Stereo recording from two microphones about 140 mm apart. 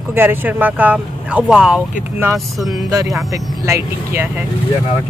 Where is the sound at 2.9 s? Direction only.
25° right (ahead or behind).